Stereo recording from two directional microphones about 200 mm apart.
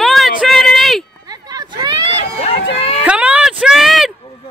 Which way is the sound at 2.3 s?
30° left (ahead or behind).